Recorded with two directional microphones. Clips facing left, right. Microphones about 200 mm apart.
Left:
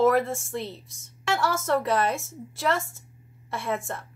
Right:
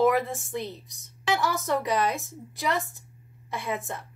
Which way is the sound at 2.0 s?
Centre (ahead or behind).